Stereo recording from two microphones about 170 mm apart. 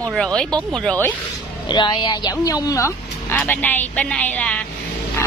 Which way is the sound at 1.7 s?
25° left (ahead or behind).